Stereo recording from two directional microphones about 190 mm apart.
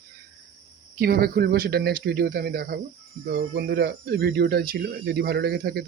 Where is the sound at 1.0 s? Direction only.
50° right (ahead or behind).